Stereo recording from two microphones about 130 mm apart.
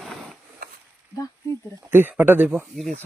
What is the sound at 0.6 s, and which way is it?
Stir, 90° right.